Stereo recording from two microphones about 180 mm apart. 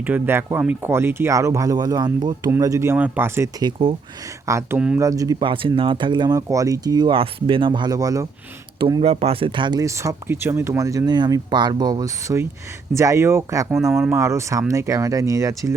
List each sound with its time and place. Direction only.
0.0 s speech: 10° right (ahead or behind); by 3.9 s 25° right (ahead or behind)
4.4 s speech: 15° right (ahead or behind)
8.8 s speech: 30° right (ahead or behind)